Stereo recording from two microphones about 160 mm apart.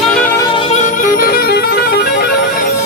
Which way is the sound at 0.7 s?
55° left (ahead or behind).